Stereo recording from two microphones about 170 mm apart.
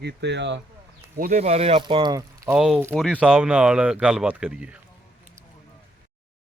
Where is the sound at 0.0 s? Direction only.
90° right.